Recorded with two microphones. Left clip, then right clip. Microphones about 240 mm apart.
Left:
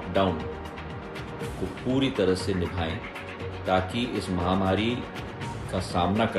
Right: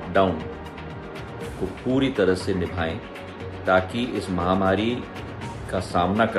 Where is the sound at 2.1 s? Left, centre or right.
Centre.